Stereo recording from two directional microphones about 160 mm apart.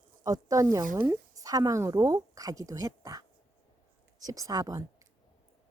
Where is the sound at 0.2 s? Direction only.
20° right (ahead or behind).